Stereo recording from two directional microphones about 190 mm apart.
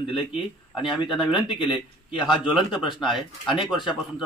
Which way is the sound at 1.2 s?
Centre (ahead or behind).